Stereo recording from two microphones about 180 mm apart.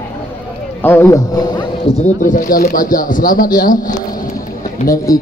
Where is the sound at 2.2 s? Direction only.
45° left (ahead or behind).